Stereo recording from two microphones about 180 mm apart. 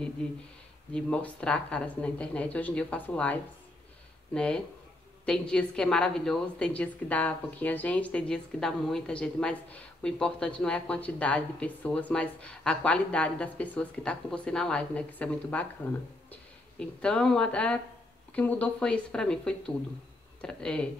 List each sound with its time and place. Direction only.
0.9 s a woman's voice: 5° left (ahead or behind)